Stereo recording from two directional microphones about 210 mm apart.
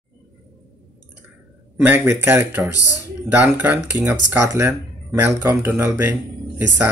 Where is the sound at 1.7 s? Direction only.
10° right (ahead or behind).